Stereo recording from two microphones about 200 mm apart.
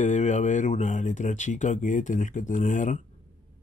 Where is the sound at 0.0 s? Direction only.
35° left (ahead or behind).